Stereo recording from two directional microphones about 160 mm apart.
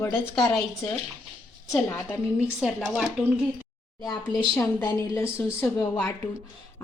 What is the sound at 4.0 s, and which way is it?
A woman's voice, 20° left (ahead or behind).